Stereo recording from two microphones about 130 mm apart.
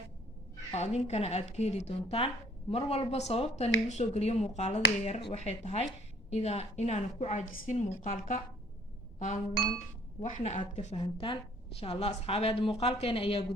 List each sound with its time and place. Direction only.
0.7 s speech: 55° left (ahead or behind); by 8.4 s 75° left (ahead or behind)
9.1 s a sound: 75° left (ahead or behind)
10.2 s a woman's voice: 70° left (ahead or behind)
10.9 s a woman's voice: 45° left (ahead or behind)